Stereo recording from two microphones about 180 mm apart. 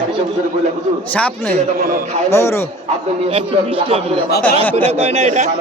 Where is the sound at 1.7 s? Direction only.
55° right (ahead or behind).